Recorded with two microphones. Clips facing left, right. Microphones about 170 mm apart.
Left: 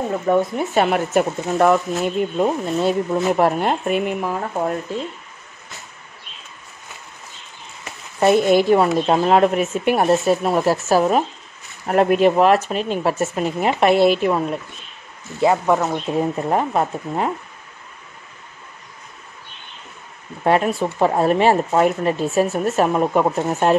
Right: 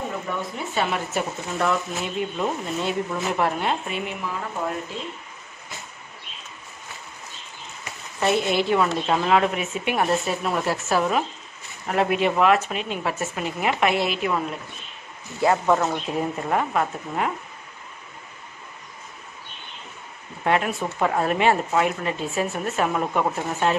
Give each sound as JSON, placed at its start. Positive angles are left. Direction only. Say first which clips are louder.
{"t": 0.3, "sound": "speech", "louder": "left 11 dB", "side_deg": 50}
{"t": 8.2, "sound": "speech", "louder": "left 7 dB", "side_deg": 45}
{"t": 15.5, "sound": "speech", "louder": "left 3 dB", "side_deg": 10}
{"t": 16.1, "sound": "speech", "louder": "left 5 dB", "side_deg": 30}
{"t": 20.4, "sound": "speech", "louder": "left 5 dB", "side_deg": 35}